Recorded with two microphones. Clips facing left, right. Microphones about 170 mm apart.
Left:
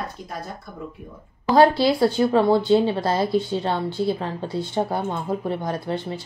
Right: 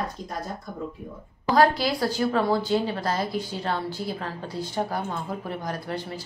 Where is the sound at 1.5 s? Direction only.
25° left (ahead or behind).